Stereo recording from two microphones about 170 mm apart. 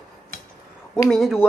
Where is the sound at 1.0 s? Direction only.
Centre (ahead or behind).